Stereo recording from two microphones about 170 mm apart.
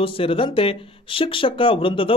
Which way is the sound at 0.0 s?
30° left (ahead or behind).